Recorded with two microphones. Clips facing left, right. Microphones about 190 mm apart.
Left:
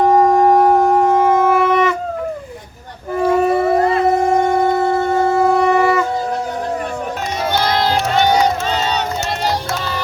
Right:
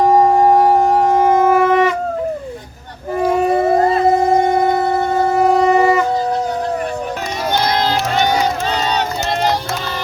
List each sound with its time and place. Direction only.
1.4 s shofar: 15° right (ahead or behind)
3.2 s howl: 20° right (ahead or behind)
5.2 s shofar: 15° right (ahead or behind)